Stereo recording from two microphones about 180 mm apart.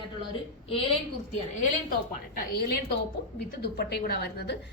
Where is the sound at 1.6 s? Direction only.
45° left (ahead or behind).